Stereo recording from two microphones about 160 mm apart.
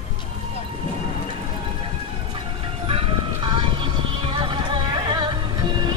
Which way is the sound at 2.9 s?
35° right (ahead or behind).